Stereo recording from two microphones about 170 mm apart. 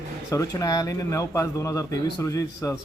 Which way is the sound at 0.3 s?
20° left (ahead or behind).